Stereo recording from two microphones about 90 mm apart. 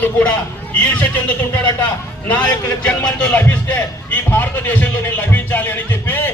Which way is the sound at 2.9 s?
10° left (ahead or behind).